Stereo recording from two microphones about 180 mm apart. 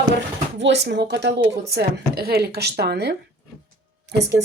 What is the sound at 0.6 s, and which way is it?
Speech, 75° right (ahead or behind).